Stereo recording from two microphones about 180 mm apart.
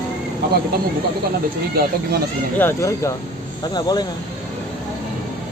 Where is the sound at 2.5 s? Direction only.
15° left (ahead or behind).